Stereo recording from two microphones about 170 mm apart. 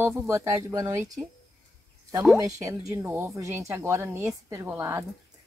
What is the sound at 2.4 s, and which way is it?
Speech, 20° right (ahead or behind).